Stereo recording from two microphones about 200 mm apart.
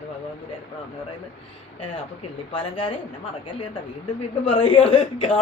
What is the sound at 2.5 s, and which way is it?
Speech, 25° left (ahead or behind).